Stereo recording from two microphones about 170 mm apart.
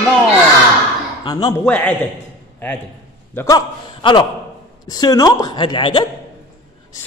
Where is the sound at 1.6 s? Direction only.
10° left (ahead or behind).